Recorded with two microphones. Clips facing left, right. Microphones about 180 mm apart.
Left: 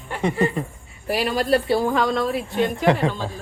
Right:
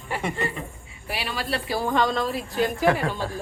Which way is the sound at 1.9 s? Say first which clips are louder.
Left 2 dB; centre (ahead or behind).